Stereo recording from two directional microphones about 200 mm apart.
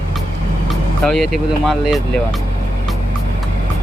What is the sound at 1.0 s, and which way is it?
Speech, centre (ahead or behind).